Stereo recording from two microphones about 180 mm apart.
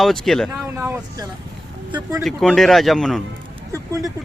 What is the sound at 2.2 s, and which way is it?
A man's voice, centre (ahead or behind).